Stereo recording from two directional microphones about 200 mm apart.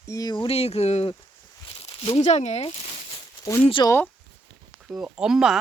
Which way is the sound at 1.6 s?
25° left (ahead or behind).